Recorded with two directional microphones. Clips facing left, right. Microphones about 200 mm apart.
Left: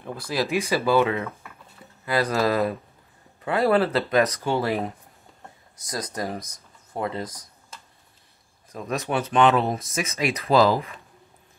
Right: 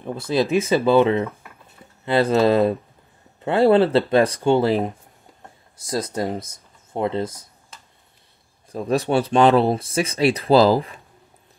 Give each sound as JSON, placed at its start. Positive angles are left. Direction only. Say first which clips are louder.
{"t": 0.0, "sound": "speech", "louder": "right 6 dB", "side_deg": -25}
{"t": 8.7, "sound": "speech", "louder": "right 7 dB", "side_deg": -30}